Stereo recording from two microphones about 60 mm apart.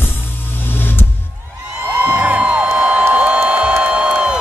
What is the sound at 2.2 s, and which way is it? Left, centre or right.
Music, right.